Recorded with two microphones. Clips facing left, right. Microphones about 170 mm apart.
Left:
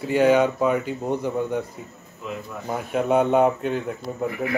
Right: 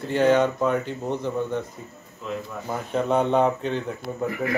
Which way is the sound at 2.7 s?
10° left (ahead or behind).